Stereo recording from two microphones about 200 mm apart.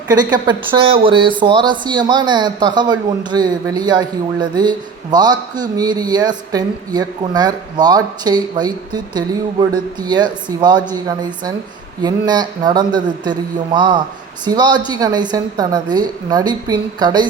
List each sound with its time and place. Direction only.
0.1 s speech: 20° right (ahead or behind)